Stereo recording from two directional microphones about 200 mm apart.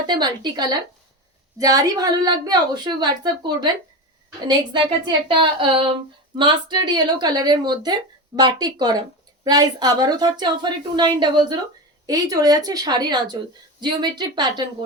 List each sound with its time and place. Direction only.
0.1 s a woman's voice: 20° right (ahead or behind)
5.3 s a woman's voice: 25° right (ahead or behind)